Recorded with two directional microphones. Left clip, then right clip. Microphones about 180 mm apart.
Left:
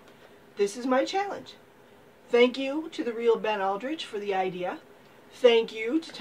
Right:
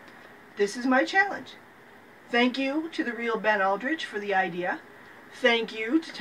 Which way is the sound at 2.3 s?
30° left (ahead or behind).